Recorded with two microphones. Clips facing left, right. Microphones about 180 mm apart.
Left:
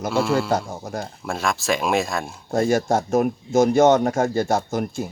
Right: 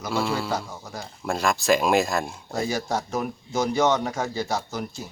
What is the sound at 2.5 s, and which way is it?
Speech, 50° left (ahead or behind).